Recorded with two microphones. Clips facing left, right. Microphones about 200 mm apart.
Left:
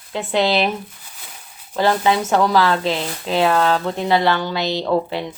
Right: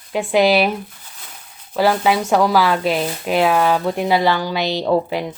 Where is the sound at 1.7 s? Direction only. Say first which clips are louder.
Right 1 dB; 10° right (ahead or behind).